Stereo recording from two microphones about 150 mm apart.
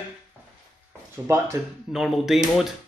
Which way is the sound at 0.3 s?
10° right (ahead or behind).